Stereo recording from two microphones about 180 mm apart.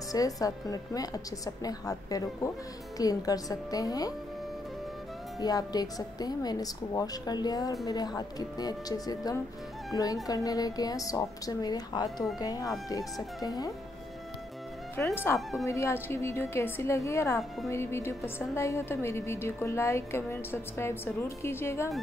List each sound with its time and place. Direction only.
0.1 s a woman's voice: 20° left (ahead or behind)
5.4 s a woman's voice: 20° left (ahead or behind)
15.0 s a woman's voice: 10° left (ahead or behind)